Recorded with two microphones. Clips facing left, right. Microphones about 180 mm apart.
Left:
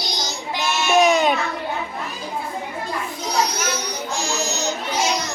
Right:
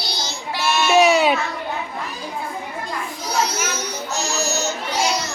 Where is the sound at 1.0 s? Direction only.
10° right (ahead or behind).